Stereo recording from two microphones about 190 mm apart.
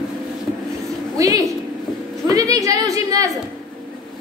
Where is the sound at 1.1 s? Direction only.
15° right (ahead or behind).